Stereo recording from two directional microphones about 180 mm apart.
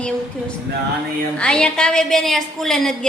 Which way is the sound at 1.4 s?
5° left (ahead or behind).